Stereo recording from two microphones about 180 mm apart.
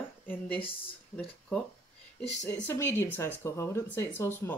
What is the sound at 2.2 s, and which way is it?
Speech, 40° left (ahead or behind).